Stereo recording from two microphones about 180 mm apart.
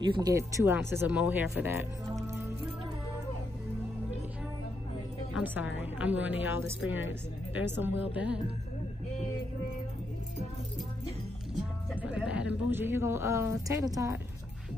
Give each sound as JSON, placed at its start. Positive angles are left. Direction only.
{"t": 0.0, "sound": "speech", "side_deg": -20}
{"t": 5.4, "sound": "a woman's voice", "side_deg": -10}
{"t": 6.9, "sound": "speech", "side_deg": 90}
{"t": 7.5, "sound": "a woman's voice", "side_deg": -10}
{"t": 12.0, "sound": "speech", "side_deg": -5}